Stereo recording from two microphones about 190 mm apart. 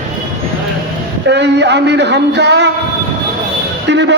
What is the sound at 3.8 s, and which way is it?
Speech, 70° right (ahead or behind).